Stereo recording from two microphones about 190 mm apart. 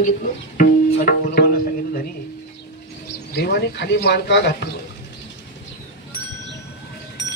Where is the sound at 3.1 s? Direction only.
60° left (ahead or behind).